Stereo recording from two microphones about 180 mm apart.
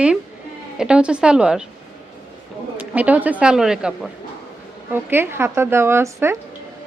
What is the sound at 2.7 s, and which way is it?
Speech, 10° right (ahead or behind).